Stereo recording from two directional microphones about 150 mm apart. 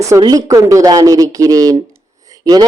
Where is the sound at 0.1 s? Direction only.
25° right (ahead or behind).